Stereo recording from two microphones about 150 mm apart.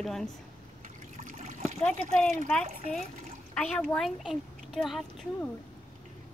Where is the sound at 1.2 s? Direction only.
60° right (ahead or behind).